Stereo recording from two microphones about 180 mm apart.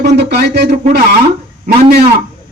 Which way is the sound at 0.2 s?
65° right (ahead or behind).